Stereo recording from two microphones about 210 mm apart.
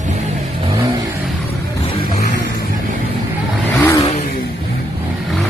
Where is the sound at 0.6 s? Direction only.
20° right (ahead or behind).